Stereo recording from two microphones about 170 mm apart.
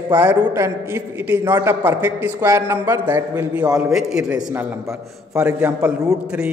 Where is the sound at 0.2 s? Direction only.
10° right (ahead or behind).